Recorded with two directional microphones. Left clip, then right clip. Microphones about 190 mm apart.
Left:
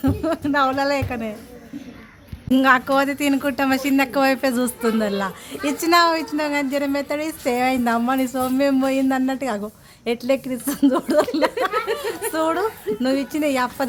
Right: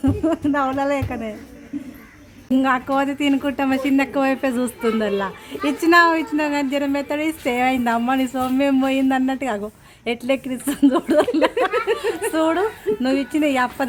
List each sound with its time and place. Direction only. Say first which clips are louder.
0.0 s speech: right 2 dB; 5° right (ahead or behind)
2.5 s speech: left 3 dB; centre (ahead or behind)
11.6 s a sound: right 3 dB; 30° right (ahead or behind)
12.3 s speech: right 1 dB; 5° right (ahead or behind)